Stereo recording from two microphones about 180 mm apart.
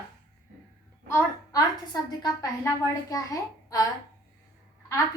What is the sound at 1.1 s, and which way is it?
A woman's voice, 20° left (ahead or behind).